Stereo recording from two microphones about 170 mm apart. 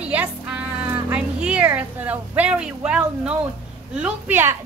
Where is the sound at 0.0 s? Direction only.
10° right (ahead or behind).